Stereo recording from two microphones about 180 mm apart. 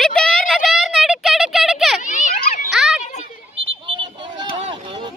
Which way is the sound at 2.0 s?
45° left (ahead or behind).